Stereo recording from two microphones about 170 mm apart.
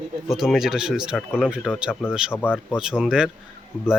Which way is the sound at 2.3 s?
10° left (ahead or behind).